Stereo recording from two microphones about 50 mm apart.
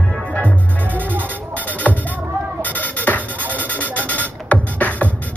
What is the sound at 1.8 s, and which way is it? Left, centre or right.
Music, left.